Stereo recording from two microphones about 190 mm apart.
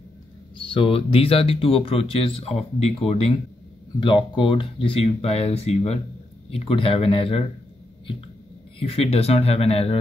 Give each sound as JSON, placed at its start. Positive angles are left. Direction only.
{"t": 0.7, "sound": "speech", "side_deg": 30}
{"t": 8.7, "sound": "speech", "side_deg": 30}